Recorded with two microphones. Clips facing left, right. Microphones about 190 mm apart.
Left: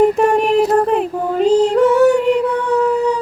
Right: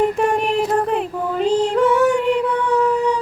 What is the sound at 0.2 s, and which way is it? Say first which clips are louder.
Music: left 5 dB; 40° left (ahead or behind).